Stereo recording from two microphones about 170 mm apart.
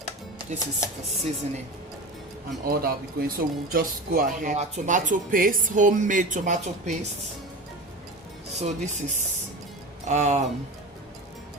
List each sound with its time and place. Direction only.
0.3 s speech: 20° left (ahead or behind)
2.6 s speech: 60° right (ahead or behind); by 7.1 s 45° right (ahead or behind)
8.5 s speech: 40° right (ahead or behind)